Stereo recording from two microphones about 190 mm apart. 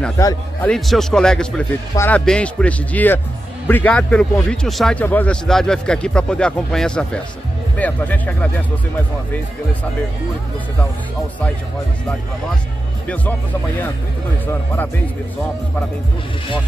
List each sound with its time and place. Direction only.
0.2 s a man's voice: 20° left (ahead or behind)
0.7 s a man's voice: centre (ahead or behind)
14.4 s speech: 10° left (ahead or behind)